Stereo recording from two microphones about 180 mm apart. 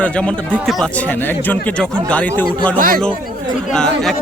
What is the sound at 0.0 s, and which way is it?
Speech, 5° left (ahead or behind).